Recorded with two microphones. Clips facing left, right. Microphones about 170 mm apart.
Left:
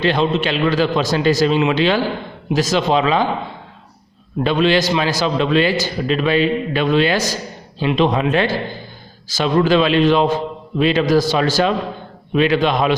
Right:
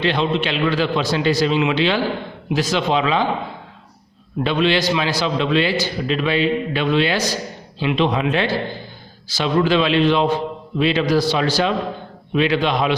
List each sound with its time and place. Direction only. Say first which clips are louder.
0.0 s a man's voice: left 2 dB; 40° left (ahead or behind)
4.4 s a man's voice: left 2 dB; 45° left (ahead or behind)